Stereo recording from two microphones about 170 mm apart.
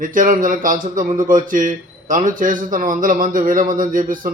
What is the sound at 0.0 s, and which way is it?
A man's voice, 50° right (ahead or behind).